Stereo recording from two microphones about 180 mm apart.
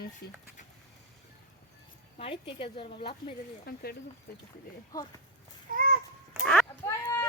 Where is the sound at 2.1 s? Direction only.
30° left (ahead or behind).